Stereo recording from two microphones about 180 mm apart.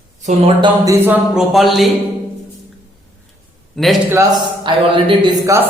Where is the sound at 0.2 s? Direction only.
40° right (ahead or behind).